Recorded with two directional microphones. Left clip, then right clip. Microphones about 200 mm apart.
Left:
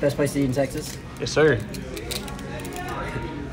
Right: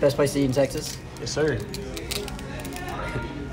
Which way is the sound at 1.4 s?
10° right (ahead or behind).